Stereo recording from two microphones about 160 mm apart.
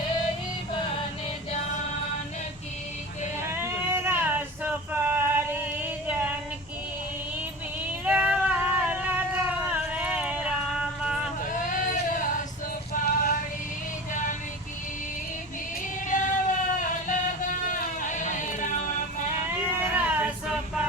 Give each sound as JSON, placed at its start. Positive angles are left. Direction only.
{"t": 3.5, "sound": "female singing", "side_deg": -15}
{"t": 8.0, "sound": "a sound", "side_deg": -5}
{"t": 11.4, "sound": "a sound", "side_deg": 55}
{"t": 12.9, "sound": "music", "side_deg": 60}
{"t": 16.0, "sound": "music", "side_deg": 50}
{"t": 19.5, "sound": "cat", "side_deg": -10}